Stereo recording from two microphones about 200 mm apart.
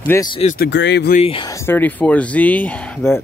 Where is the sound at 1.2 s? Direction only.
25° left (ahead or behind).